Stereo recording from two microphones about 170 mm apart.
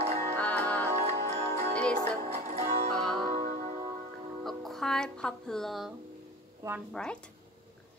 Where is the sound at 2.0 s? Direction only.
40° right (ahead or behind).